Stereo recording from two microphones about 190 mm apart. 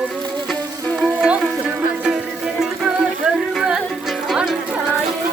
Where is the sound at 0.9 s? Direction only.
5° right (ahead or behind).